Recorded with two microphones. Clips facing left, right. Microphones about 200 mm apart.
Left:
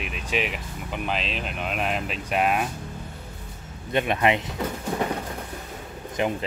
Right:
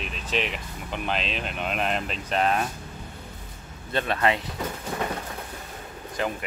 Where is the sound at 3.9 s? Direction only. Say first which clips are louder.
Left 2 dB; 15° left (ahead or behind).